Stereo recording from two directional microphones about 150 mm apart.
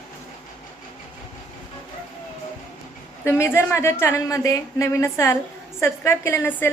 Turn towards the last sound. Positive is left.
turn(degrees=15)  # may be behind; listen again after turning